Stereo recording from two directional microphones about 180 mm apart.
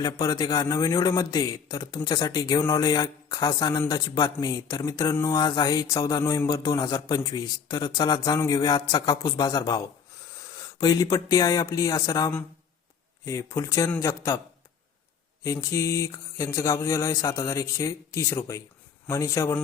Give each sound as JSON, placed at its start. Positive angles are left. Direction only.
{"t": 0.0, "sound": "speech", "side_deg": 20}
{"t": 15.4, "sound": "speech", "side_deg": 15}